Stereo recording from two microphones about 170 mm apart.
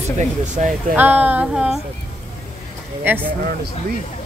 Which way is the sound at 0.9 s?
10° right (ahead or behind).